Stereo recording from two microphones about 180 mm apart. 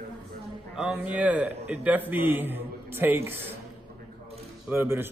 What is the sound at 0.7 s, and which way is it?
A man's voice, 5° right (ahead or behind).